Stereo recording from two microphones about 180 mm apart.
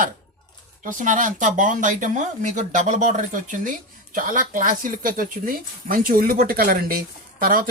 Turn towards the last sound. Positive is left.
turn(degrees=-50)  # may be behind; listen again after turning